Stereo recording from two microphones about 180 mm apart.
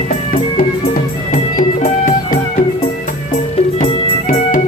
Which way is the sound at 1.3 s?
50° left (ahead or behind).